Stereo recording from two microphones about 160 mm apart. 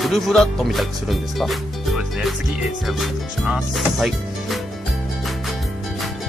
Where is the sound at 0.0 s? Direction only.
Centre (ahead or behind).